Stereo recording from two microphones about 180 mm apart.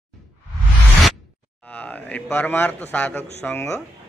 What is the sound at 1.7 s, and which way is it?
A man's voice, 10° left (ahead or behind).